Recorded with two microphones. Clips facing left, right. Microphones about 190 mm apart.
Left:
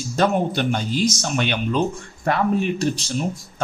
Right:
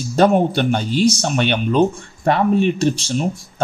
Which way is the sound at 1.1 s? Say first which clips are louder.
Right 5 dB; 30° right (ahead or behind).